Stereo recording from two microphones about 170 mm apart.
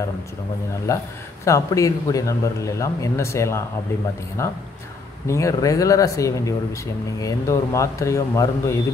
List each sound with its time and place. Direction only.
0.9 s a man's voice: 20° left (ahead or behind)